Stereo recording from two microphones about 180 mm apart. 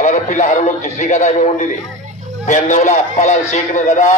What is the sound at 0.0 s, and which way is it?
A man's voice, 40° left (ahead or behind).